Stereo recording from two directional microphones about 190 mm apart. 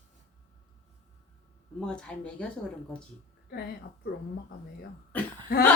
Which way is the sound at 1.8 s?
5° left (ahead or behind).